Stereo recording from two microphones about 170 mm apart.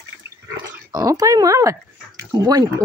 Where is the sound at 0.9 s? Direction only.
20° right (ahead or behind).